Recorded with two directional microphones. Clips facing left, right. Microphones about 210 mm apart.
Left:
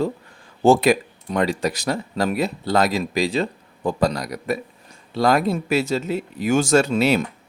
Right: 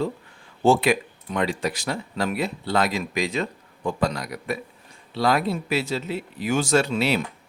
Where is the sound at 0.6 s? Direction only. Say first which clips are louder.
Left 4 dB; 40° left (ahead or behind).